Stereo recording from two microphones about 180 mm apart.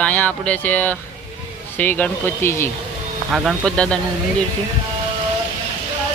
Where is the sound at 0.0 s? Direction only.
10° left (ahead or behind).